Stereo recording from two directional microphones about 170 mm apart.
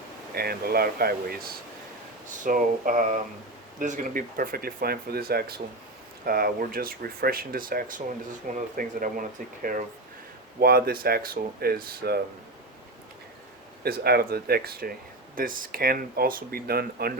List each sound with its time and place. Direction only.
0.3 s speech: 65° right (ahead or behind)
2.4 s speech: 50° right (ahead or behind)
10.6 s speech: 60° right (ahead or behind)
13.8 s speech: 65° right (ahead or behind)